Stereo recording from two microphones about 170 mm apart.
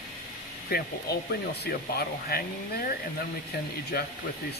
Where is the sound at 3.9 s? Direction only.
65° left (ahead or behind).